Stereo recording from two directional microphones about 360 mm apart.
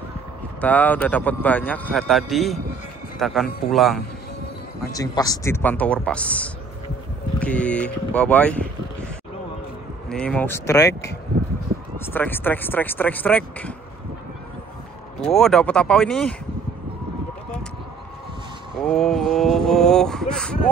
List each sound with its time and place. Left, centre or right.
0.6 s a man's voice: centre
10.0 s a man's voice: centre
10.9 s speech: left
12.1 s a man's voice: centre
15.2 s a man's voice: centre
18.8 s a man's voice: centre